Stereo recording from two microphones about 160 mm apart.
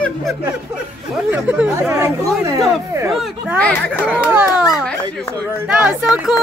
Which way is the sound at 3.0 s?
Centre (ahead or behind).